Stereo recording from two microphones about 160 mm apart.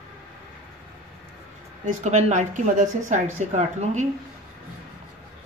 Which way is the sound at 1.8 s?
45° right (ahead or behind).